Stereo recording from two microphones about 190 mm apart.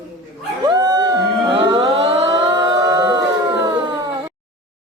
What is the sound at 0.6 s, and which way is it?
Dog, 20° right (ahead or behind).